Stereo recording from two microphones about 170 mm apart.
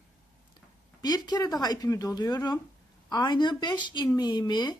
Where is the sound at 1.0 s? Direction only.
25° left (ahead or behind).